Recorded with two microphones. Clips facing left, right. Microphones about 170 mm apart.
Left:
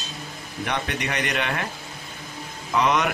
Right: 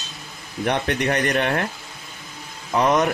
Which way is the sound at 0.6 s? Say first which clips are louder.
Right 6 dB; 55° right (ahead or behind).